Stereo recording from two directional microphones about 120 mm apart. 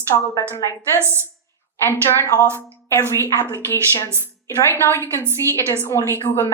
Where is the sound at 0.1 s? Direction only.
45° left (ahead or behind).